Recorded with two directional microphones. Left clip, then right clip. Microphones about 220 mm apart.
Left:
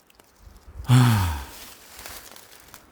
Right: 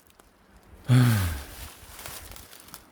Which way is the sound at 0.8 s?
25° left (ahead or behind).